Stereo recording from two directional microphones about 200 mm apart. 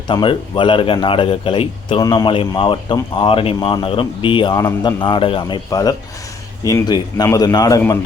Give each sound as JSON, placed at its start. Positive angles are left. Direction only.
{"t": 0.1, "sound": "a man's voice", "side_deg": 25}